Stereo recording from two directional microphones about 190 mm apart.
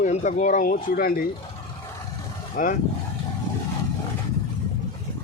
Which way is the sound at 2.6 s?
45° left (ahead or behind).